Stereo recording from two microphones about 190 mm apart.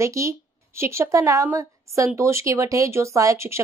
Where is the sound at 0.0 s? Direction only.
15° right (ahead or behind).